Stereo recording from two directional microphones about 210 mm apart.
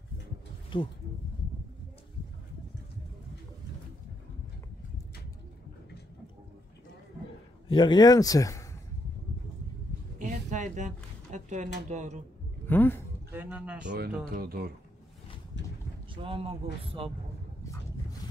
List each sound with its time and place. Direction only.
0.7 s speech: 25° left (ahead or behind)
7.6 s a man's voice: 20° left (ahead or behind)
10.1 s a sound: 35° right (ahead or behind)
12.6 s speech: 10° left (ahead or behind)
13.3 s speech: 5° right (ahead or behind)
13.8 s speech: 50° right (ahead or behind)
16.2 s speech: 25° right (ahead or behind)